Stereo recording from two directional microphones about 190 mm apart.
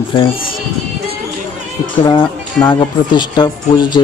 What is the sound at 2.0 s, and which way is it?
Speech, 25° left (ahead or behind).